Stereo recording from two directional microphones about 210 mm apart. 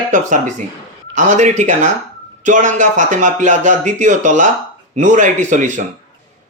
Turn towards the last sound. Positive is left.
turn(degrees=-35)  # may be behind; listen again after turning